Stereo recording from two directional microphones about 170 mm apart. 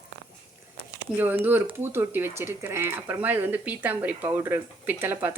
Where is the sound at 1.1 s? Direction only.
10° right (ahead or behind).